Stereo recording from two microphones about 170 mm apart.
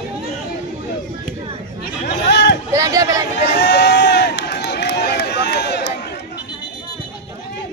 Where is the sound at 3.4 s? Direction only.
85° left.